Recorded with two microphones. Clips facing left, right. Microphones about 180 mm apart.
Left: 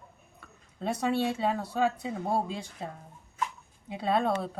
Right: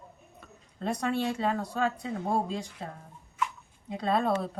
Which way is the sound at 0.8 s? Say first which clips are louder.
Left 1 dB; 5° left (ahead or behind).